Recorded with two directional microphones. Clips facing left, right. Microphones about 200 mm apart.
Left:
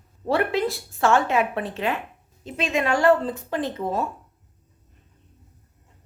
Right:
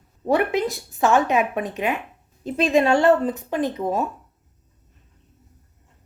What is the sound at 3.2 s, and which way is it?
Speech, 15° right (ahead or behind).